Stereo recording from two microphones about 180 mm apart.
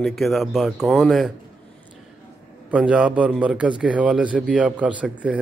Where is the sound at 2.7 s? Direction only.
5° right (ahead or behind).